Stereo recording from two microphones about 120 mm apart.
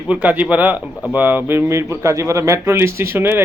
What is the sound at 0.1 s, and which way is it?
Speech, 10° right (ahead or behind).